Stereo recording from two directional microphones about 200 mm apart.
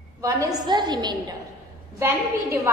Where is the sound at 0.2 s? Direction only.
15° right (ahead or behind).